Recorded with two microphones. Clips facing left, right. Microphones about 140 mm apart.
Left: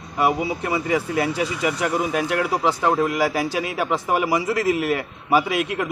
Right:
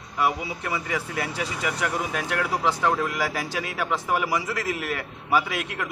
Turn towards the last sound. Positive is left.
turn(degrees=15)  # may be behind; listen again after turning